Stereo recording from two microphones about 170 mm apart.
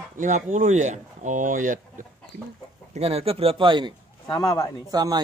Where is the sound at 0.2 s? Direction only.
45° right (ahead or behind).